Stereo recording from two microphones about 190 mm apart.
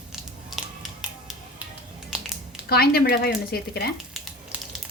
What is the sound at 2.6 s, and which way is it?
Speech, 55° left (ahead or behind).